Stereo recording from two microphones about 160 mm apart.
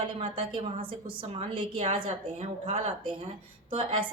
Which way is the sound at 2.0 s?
50° right (ahead or behind).